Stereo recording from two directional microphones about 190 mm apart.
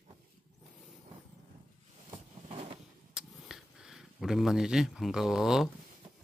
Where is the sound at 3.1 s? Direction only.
5° right (ahead or behind).